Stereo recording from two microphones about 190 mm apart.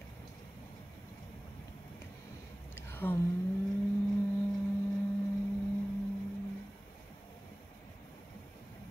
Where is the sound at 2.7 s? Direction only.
10° left (ahead or behind).